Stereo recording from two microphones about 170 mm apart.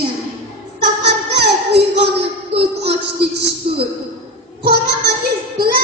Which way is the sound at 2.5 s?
35° right (ahead or behind).